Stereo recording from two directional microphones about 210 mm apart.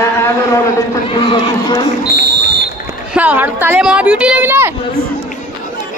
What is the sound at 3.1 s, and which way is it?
Speech, 10° right (ahead or behind).